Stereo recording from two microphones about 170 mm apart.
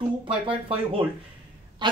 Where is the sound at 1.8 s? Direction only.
25° right (ahead or behind).